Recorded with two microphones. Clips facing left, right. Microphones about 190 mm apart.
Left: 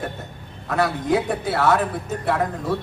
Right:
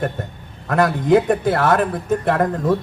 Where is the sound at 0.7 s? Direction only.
50° right (ahead or behind).